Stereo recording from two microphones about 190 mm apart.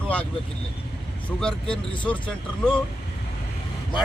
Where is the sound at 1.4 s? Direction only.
5° left (ahead or behind).